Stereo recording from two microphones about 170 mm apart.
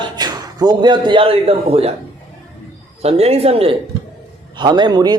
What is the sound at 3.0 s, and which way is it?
A man's voice, 35° right (ahead or behind).